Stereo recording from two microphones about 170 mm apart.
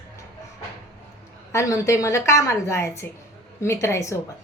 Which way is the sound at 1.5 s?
20° left (ahead or behind).